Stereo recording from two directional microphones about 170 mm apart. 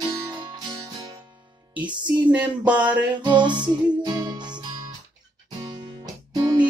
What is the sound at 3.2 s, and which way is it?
Music, 25° right (ahead or behind).